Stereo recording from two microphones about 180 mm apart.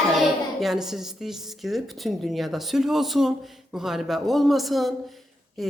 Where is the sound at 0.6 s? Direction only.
Centre (ahead or behind).